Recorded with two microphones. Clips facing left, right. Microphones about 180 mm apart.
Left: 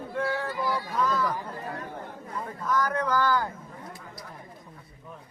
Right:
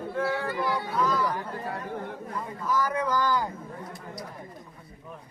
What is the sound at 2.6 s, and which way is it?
Speech, 10° right (ahead or behind).